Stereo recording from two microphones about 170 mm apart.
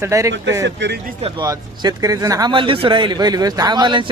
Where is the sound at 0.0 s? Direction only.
20° right (ahead or behind).